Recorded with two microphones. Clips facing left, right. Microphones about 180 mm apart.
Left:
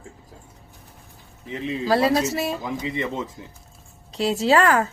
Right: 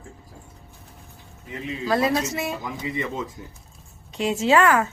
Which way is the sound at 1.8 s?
30° left (ahead or behind).